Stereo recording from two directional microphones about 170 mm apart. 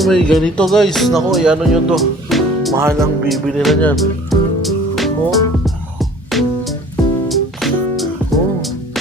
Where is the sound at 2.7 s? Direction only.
15° right (ahead or behind).